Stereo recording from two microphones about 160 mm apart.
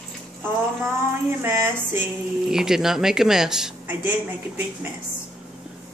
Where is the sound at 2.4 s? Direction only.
5° right (ahead or behind).